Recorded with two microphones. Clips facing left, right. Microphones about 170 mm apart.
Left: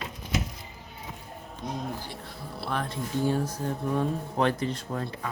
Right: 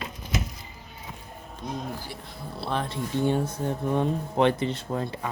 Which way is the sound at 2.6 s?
30° right (ahead or behind).